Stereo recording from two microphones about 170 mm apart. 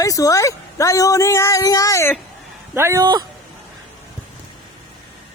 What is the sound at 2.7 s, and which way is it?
Speech, 15° right (ahead or behind).